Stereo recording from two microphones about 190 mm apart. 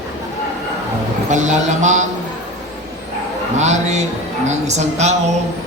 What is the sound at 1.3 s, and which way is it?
Speech, 40° right (ahead or behind).